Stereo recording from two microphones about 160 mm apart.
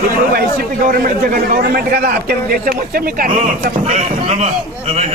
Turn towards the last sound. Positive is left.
turn(degrees=-40)  # may be behind; listen again after turning